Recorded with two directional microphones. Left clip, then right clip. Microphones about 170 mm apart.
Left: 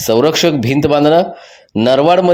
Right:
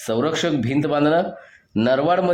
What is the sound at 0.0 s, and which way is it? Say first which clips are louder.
A man's voice: left 10 dB; 30° left (ahead or behind).